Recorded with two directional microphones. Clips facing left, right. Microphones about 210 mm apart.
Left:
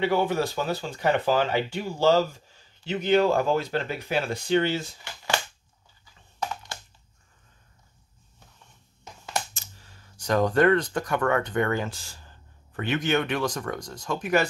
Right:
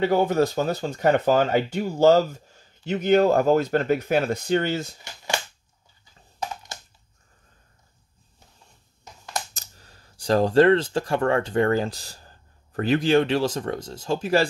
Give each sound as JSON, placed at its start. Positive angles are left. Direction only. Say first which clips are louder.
{"t": 0.0, "sound": "speech", "louder": "right 4 dB", "side_deg": -45}
{"t": 5.0, "sound": "cap gun", "louder": "even", "side_deg": -15}
{"t": 6.4, "sound": "computer keyboard", "louder": "even", "side_deg": -20}
{"t": 9.5, "sound": "speech", "louder": "right 1 dB", "side_deg": -40}